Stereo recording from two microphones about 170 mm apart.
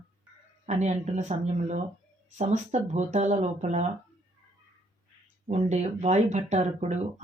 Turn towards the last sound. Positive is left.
turn(degrees=-40)  # may be behind; listen again after turning